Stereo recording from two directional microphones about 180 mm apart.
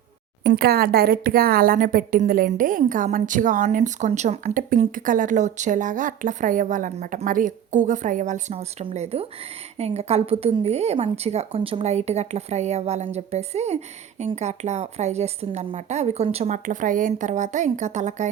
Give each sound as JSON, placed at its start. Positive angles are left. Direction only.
{"t": 0.4, "sound": "speech", "side_deg": -60}